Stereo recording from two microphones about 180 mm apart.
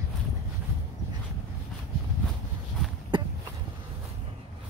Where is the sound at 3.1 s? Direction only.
25° right (ahead or behind).